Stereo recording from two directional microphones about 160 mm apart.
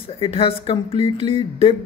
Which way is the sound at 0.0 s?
35° left (ahead or behind).